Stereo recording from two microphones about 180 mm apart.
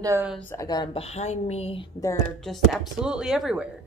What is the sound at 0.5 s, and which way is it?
Speech, 20° left (ahead or behind).